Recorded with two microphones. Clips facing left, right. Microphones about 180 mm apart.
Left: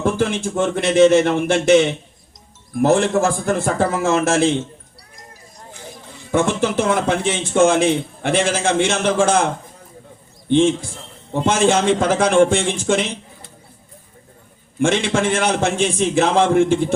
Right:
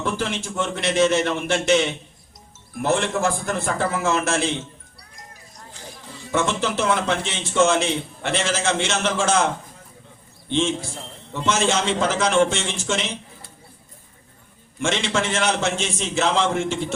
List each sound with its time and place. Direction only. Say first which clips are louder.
0.0 s a man's voice: left 7 dB; 50° left (ahead or behind)
6.3 s a man's voice: left 5 dB; 55° left (ahead or behind)
10.5 s a man's voice: left 7 dB; 55° left (ahead or behind)
14.8 s a man's voice: left 6 dB; 55° left (ahead or behind)